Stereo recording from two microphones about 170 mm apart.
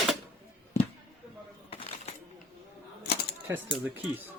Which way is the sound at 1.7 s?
35° left (ahead or behind).